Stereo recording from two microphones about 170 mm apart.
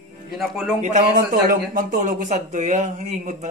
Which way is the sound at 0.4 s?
Centre (ahead or behind).